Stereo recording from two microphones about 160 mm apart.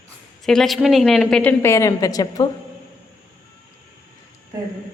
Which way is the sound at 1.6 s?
15° left (ahead or behind).